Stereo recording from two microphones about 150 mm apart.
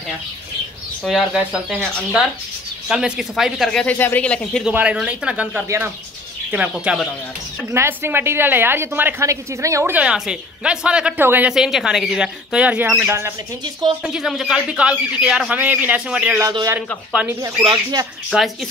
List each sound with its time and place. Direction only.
1.0 s speech: 5° right (ahead or behind)
4.6 s a woman's voice: 5° right (ahead or behind)
14.0 s a woman's voice: centre (ahead or behind)
16.4 s speech: 25° right (ahead or behind)
17.1 s a woman's voice: 10° right (ahead or behind)
17.4 s speech: 25° right (ahead or behind)
18.3 s speech: 5° right (ahead or behind)